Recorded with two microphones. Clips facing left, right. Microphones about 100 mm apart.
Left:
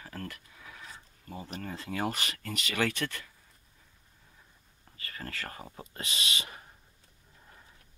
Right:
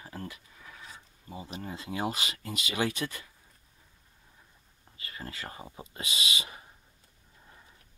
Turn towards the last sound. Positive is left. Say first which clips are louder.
# right 1 dB
turn(degrees=-15)  # may be behind; listen again after turning